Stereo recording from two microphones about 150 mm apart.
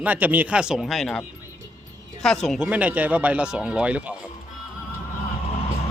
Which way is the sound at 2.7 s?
10° right (ahead or behind).